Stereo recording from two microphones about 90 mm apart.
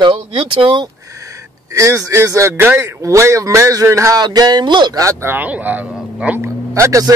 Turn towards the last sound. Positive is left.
turn(degrees=-35)  # may be behind; listen again after turning